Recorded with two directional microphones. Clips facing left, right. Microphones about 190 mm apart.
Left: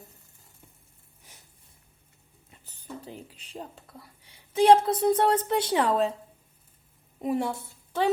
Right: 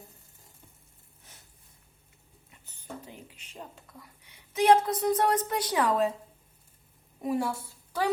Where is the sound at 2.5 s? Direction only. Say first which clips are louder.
Left 5 dB; 35° left (ahead or behind).